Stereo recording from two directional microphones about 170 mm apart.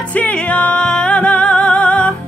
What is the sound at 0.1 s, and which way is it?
Music, 10° left (ahead or behind).